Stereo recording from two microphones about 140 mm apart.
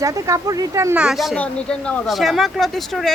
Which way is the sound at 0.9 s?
5° right (ahead or behind).